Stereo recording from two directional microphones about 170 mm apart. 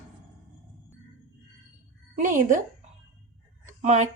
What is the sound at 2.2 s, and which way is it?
Speech, 50° right (ahead or behind).